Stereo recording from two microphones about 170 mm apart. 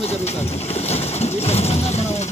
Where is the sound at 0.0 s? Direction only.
40° left (ahead or behind).